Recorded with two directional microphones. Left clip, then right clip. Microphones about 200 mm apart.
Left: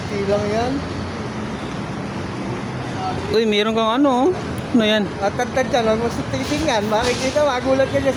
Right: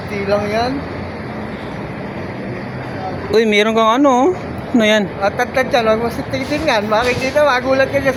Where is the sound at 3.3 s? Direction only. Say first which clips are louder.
Right 5 dB; 10° right (ahead or behind).